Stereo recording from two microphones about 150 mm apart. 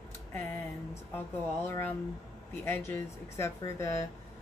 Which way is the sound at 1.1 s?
15° left (ahead or behind).